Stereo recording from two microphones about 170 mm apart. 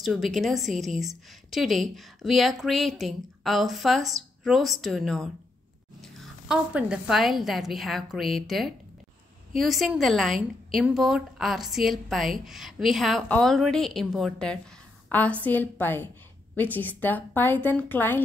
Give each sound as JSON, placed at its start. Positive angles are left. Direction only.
{"t": 0.0, "sound": "a woman's voice", "side_deg": 0}